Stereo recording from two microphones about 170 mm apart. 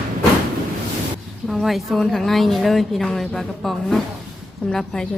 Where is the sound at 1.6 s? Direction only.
Centre (ahead or behind).